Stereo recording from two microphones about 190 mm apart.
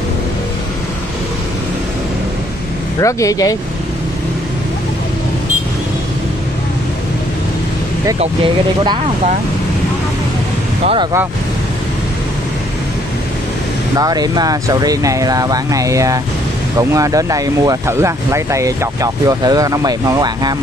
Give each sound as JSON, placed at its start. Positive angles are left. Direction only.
{"t": 3.0, "sound": "speech", "side_deg": 15}
{"t": 13.9, "sound": "speech", "side_deg": -20}